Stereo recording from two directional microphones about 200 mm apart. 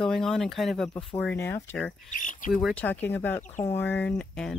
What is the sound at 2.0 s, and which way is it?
Speech, 40° left (ahead or behind).